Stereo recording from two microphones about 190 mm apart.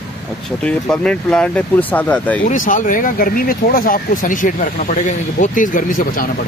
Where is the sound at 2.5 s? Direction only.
45° left (ahead or behind).